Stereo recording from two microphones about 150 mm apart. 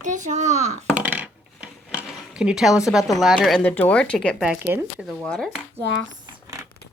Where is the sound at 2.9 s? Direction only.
Centre (ahead or behind).